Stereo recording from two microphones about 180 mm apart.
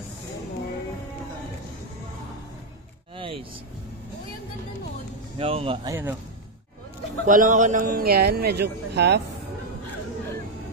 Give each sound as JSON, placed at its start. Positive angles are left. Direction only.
{"t": 3.2, "sound": "vehicle", "side_deg": -30}
{"t": 5.4, "sound": "speech", "side_deg": -30}
{"t": 5.9, "sound": "speech", "side_deg": -10}
{"t": 7.2, "sound": "speech", "side_deg": -45}